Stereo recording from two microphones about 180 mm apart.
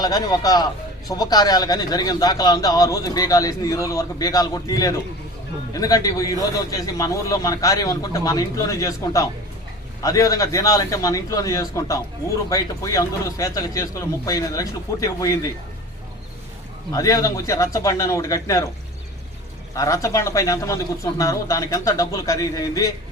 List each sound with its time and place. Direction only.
0.0 s a man's voice: 20° left (ahead or behind)
16.9 s speech: 20° left (ahead or behind)
19.7 s speech: 15° left (ahead or behind)